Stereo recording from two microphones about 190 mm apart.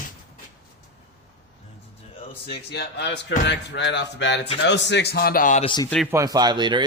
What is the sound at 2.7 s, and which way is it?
A man's voice, 65° left (ahead or behind).